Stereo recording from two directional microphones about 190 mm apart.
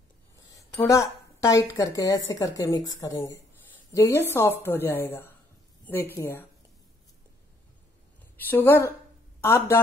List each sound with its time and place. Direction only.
0.5 s a woman's voice: 15° left (ahead or behind)
8.5 s a woman's voice: 10° left (ahead or behind)